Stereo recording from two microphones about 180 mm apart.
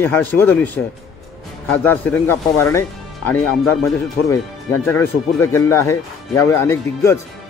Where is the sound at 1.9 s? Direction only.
10° left (ahead or behind).